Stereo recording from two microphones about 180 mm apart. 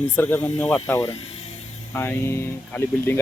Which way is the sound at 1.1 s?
35° left (ahead or behind).